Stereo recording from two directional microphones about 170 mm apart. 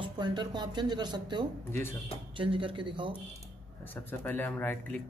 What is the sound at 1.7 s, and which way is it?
Speech, 15° left (ahead or behind).